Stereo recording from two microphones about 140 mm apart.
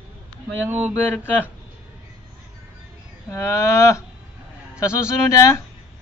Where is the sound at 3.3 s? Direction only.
20° left (ahead or behind).